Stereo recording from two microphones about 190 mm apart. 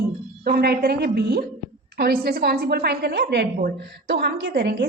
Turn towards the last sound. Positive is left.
turn(degrees=-55)  # may be behind; listen again after turning